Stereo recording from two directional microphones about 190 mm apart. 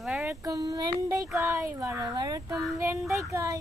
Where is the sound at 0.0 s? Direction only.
5° right (ahead or behind).